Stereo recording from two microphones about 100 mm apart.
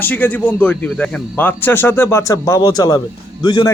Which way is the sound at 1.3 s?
20° left (ahead or behind).